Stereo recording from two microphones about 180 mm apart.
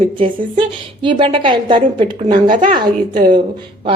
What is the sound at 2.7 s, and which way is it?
Speech, 25° right (ahead or behind).